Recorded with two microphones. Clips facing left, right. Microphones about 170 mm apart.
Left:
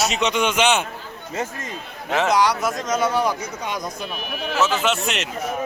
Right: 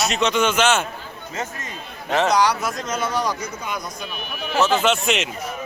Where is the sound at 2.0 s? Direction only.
5° left (ahead or behind).